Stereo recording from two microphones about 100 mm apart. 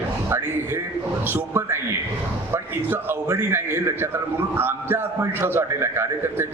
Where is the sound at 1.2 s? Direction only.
25° right (ahead or behind).